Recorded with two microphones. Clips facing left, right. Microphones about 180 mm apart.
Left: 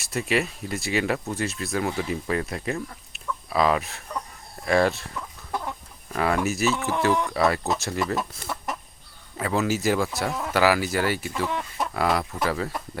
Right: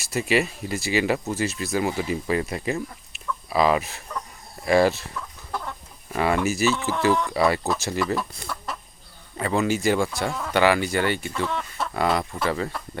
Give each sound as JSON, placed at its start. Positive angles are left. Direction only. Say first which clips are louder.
{"t": 0.0, "sound": "speech", "louder": "right 2 dB", "side_deg": 0}
{"t": 5.1, "sound": "chicken", "louder": "left 1 dB", "side_deg": 15}
{"t": 6.1, "sound": "speech", "louder": "right 1 dB", "side_deg": 0}
{"t": 8.5, "sound": "chicken", "louder": "left 1 dB", "side_deg": 20}
{"t": 9.4, "sound": "speech", "louder": "right 1 dB", "side_deg": 0}
{"t": 11.4, "sound": "speech", "louder": "left 1 dB", "side_deg": 15}
{"t": 11.9, "sound": "speech", "louder": "right 1 dB", "side_deg": 0}